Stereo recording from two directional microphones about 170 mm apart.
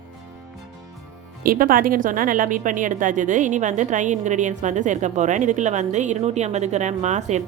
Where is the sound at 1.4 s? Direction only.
60° right (ahead or behind).